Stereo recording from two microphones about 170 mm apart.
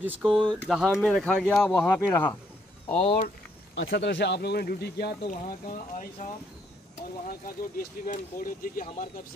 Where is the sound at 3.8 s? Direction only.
90° left; by 5.2 s 70° left (ahead or behind).